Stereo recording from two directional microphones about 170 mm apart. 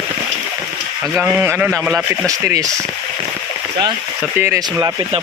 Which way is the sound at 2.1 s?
15° right (ahead or behind).